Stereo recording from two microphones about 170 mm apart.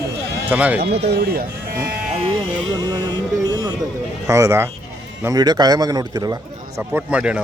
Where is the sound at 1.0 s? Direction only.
70° right (ahead or behind).